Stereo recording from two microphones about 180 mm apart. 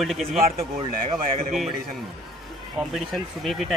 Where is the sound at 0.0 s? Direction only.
Centre (ahead or behind).